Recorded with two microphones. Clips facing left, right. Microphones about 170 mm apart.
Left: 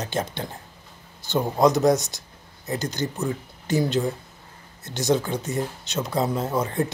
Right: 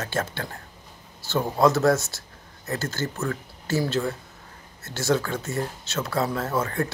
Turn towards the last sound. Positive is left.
turn(degrees=15)  # may be behind; listen again after turning